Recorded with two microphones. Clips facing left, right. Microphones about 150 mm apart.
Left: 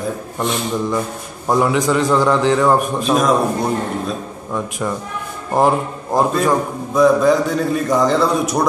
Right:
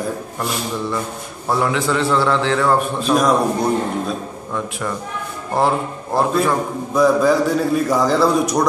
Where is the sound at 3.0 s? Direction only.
Centre (ahead or behind).